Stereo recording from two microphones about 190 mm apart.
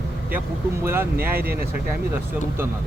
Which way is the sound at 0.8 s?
10° right (ahead or behind).